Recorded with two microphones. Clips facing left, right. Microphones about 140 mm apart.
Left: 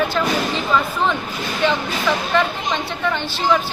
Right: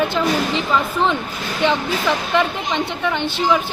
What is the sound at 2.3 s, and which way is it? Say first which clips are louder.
A woman's voice: right 1 dB; 15° right (ahead or behind).